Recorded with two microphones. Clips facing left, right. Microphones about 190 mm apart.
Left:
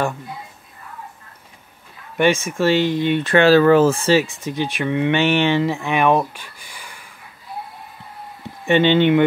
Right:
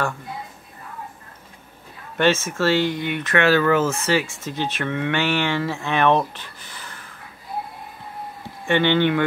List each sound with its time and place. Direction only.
2.1 s speech: 15° left (ahead or behind)
8.6 s speech: 20° left (ahead or behind)